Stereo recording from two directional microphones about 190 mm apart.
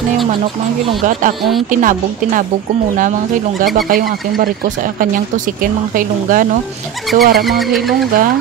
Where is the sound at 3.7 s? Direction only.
50° right (ahead or behind).